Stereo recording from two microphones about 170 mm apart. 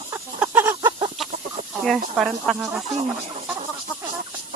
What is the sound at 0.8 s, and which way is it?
Chicken, 25° right (ahead or behind).